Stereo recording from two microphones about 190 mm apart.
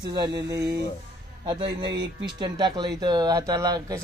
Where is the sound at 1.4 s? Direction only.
25° right (ahead or behind).